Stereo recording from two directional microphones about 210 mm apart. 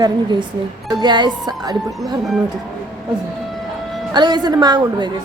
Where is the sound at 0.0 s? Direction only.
20° right (ahead or behind).